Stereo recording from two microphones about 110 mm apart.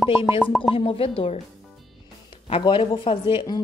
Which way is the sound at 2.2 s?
55° left (ahead or behind).